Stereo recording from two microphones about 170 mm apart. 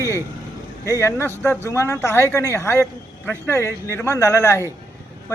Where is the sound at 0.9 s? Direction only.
15° left (ahead or behind).